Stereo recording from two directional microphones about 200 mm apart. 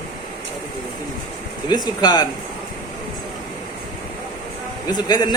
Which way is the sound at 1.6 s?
20° left (ahead or behind).